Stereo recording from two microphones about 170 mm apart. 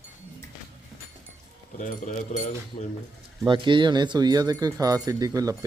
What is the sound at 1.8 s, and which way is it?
Speech, 50° left (ahead or behind).